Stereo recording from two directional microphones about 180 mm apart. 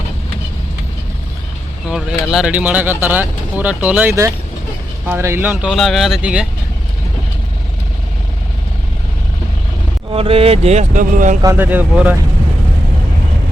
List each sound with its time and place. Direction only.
1.9 s a sound: 5° right (ahead or behind)
2.3 s speech: 5° right (ahead or behind)
10.1 s speech: 30° right (ahead or behind)
11.4 s speech: 10° right (ahead or behind)